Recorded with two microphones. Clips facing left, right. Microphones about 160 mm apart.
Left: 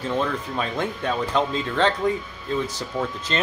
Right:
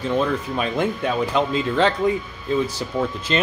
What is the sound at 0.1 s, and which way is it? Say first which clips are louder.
Speech: right 4 dB; 10° right (ahead or behind).